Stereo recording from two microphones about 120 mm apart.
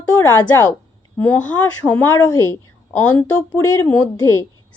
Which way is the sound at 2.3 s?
25° left (ahead or behind).